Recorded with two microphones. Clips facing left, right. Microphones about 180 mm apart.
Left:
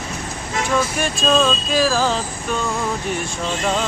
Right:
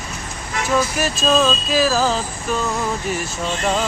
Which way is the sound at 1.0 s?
5° right (ahead or behind).